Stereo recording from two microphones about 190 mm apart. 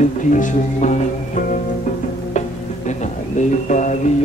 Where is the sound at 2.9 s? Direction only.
40° left (ahead or behind).